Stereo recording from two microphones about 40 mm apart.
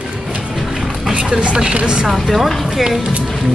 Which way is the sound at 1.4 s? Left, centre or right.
Right.